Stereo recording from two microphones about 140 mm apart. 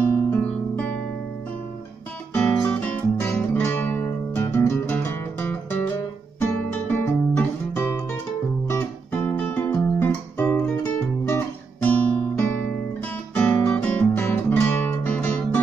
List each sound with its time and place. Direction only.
0.3 s guitar: 10° left (ahead or behind)
2.3 s guitar: 10° left (ahead or behind)